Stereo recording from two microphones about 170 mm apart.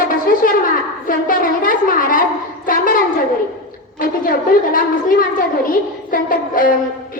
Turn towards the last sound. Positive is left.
turn(degrees=55)  # may be behind; listen again after turning